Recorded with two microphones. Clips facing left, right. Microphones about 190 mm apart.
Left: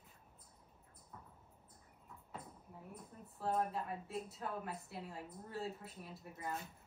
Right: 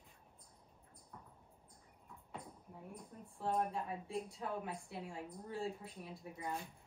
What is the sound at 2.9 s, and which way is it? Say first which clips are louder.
A woman's voice: right 1 dB; 5° left (ahead or behind).